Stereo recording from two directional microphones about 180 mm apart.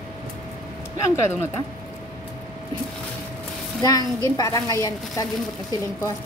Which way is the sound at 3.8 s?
20° left (ahead or behind).